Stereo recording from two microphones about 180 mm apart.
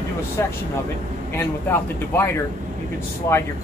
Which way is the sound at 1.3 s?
10° left (ahead or behind).